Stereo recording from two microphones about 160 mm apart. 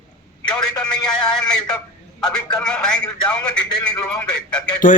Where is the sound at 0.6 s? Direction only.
5° left (ahead or behind).